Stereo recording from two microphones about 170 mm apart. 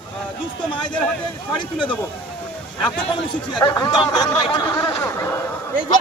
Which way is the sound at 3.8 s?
25° left (ahead or behind).